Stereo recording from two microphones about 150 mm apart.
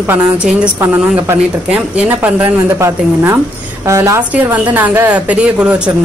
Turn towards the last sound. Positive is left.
turn(degrees=-10)  # may be behind; listen again after turning